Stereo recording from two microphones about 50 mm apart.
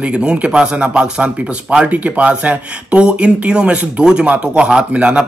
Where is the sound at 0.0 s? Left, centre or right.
Right.